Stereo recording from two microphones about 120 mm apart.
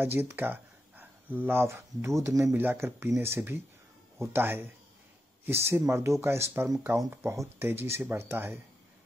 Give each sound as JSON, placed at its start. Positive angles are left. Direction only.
{"t": 0.0, "sound": "speech", "side_deg": -20}